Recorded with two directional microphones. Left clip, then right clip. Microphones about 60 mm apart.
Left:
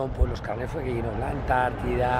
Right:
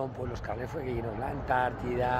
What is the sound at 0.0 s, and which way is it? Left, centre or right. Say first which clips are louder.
Speech: left 5 dB; centre.